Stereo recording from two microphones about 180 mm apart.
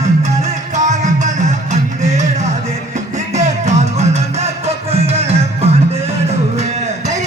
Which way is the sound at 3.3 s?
40° right (ahead or behind).